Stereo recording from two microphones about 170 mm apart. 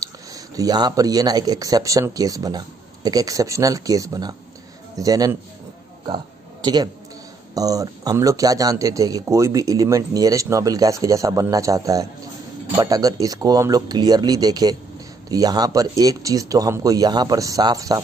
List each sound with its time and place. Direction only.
0.0 s speech: 20° right (ahead or behind)
6.0 s a sound: 25° right (ahead or behind)
7.5 s speech: 20° right (ahead or behind)